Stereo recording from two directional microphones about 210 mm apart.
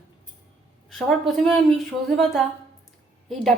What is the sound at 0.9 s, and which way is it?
A woman's voice, centre (ahead or behind).